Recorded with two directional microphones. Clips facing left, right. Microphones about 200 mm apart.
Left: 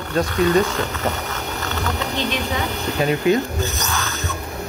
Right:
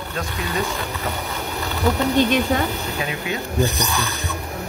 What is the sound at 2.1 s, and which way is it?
Speech, 50° right (ahead or behind).